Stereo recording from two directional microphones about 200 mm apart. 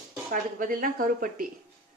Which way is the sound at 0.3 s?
45° right (ahead or behind).